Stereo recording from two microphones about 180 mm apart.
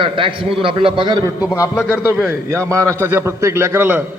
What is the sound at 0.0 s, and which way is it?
A man's voice, 30° right (ahead or behind).